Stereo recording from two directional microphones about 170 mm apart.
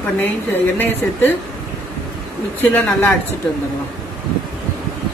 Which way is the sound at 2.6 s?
10° left (ahead or behind).